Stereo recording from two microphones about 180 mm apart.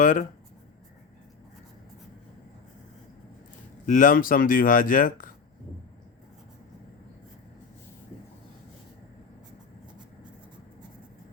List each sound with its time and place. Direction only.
0.0 s speech: 45° left (ahead or behind)
3.8 s speech: 45° left (ahead or behind)